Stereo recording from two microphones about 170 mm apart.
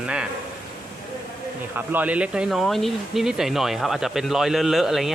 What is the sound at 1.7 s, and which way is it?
Speech, 10° right (ahead or behind).